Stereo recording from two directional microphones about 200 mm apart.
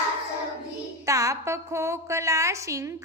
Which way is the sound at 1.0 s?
15° right (ahead or behind).